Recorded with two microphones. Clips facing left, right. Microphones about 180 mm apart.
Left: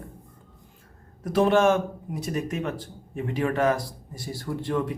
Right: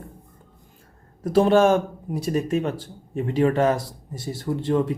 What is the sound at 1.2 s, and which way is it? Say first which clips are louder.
Speech: right 3 dB; 30° right (ahead or behind).